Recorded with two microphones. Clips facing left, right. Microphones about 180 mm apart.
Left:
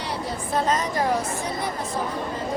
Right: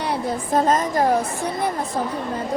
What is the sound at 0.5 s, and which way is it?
Speech, 50° right (ahead or behind).